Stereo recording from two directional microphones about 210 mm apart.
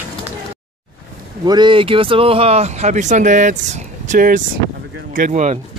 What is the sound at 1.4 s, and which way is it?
Speech, 20° right (ahead or behind).